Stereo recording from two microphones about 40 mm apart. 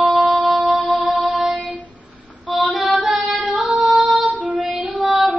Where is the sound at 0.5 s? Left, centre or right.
Right.